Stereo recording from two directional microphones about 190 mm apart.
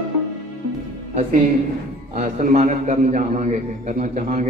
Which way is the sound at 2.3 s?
40° right (ahead or behind).